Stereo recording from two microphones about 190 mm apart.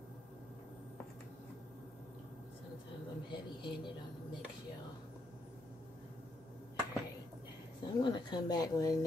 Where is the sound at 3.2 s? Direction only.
25° left (ahead or behind).